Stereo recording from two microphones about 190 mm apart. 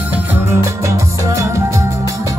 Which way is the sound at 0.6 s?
15° right (ahead or behind).